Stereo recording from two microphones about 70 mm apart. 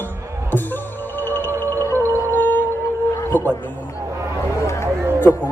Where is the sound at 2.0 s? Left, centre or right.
Right.